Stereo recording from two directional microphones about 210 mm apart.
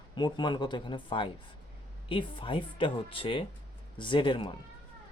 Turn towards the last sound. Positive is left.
turn(degrees=25)  # may be behind; listen again after turning